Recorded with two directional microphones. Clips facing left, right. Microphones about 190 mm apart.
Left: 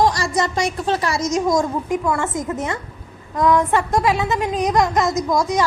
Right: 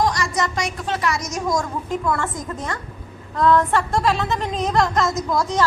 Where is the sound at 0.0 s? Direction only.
30° left (ahead or behind).